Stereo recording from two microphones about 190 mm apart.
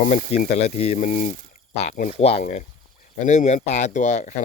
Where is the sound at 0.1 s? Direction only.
35° left (ahead or behind).